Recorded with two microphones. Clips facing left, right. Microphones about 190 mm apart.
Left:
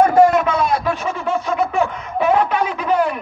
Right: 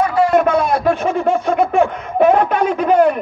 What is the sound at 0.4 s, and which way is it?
Laughter, 55° right (ahead or behind).